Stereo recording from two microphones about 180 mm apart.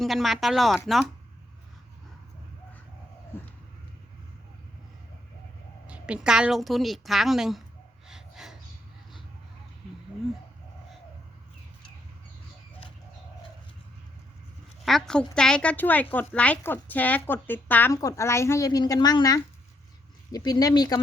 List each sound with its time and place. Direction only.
0.0 s a woman's voice: centre (ahead or behind)
3.3 s a sound: 15° left (ahead or behind)
5.9 s a woman's voice: 5° right (ahead or behind)
8.0 s gasp: centre (ahead or behind)
14.8 s a woman's voice: centre (ahead or behind); by 21.0 s 20° left (ahead or behind)